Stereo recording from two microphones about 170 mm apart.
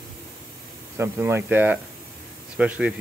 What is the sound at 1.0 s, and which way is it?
Speech, 15° right (ahead or behind).